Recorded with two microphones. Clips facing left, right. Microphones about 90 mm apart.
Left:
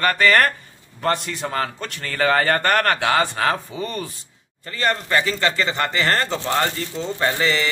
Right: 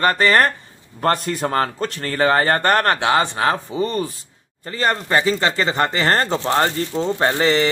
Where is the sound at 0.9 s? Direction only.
40° right (ahead or behind).